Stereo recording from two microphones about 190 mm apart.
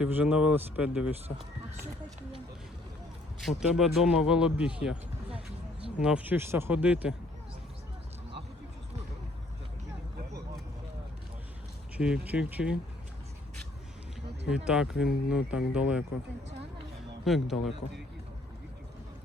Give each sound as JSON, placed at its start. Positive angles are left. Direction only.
{"t": 0.0, "sound": "a man's voice", "side_deg": -5}
{"t": 3.4, "sound": "a man's voice", "side_deg": 0}
{"t": 6.0, "sound": "speech", "side_deg": -5}
{"t": 11.9, "sound": "a man's voice", "side_deg": -5}
{"t": 14.5, "sound": "a man's voice", "side_deg": -5}
{"t": 17.2, "sound": "a man's voice", "side_deg": 0}